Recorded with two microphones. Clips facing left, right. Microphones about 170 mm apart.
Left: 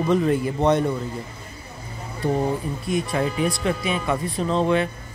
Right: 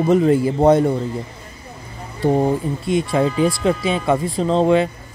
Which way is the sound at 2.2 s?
30° right (ahead or behind).